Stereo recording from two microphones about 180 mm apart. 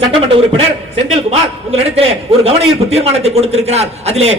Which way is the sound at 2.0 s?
35° right (ahead or behind).